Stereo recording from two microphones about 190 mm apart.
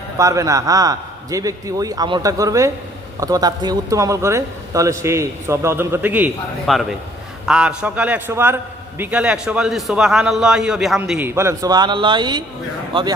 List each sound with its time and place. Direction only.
0.2 s a man's voice: 15° right (ahead or behind)